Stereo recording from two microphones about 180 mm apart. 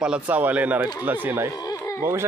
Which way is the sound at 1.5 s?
20° left (ahead or behind).